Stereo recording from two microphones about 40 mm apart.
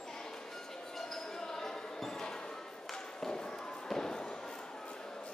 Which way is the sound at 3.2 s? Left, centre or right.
Centre.